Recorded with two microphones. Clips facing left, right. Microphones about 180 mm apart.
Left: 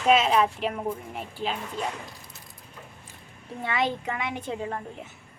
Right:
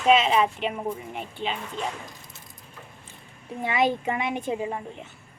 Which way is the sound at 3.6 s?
20° right (ahead or behind).